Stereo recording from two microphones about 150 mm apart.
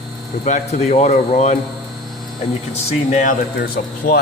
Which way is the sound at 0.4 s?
50° left (ahead or behind).